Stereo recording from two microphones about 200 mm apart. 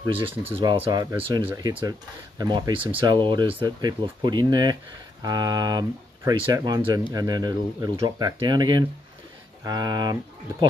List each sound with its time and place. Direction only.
0.0 s speech: 25° right (ahead or behind)